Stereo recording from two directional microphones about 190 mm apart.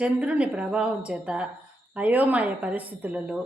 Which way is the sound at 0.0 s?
5° right (ahead or behind).